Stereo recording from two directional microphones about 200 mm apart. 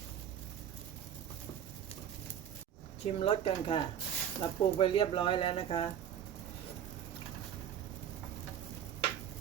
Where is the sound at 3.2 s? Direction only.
30° left (ahead or behind).